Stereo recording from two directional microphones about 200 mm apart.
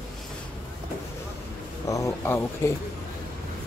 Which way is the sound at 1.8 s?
15° left (ahead or behind).